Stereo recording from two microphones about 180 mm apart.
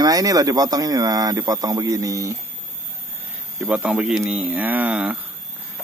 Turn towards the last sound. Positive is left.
turn(degrees=-5)  # may be behind; listen again after turning